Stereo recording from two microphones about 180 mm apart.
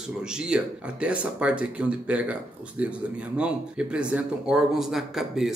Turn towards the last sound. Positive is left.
turn(degrees=0)  # may be behind; listen again after turning